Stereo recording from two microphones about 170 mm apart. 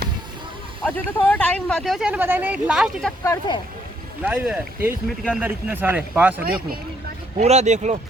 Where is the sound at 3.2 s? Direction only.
15° left (ahead or behind).